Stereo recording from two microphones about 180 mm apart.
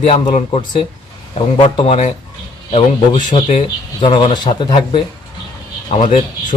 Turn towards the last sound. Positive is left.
turn(degrees=35)  # may be behind; listen again after turning